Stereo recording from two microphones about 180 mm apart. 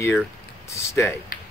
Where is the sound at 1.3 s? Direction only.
50° left (ahead or behind).